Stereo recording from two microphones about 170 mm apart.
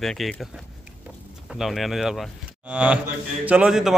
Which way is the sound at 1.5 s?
Centre (ahead or behind).